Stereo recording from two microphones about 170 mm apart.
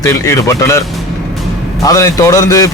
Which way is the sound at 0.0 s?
15° left (ahead or behind).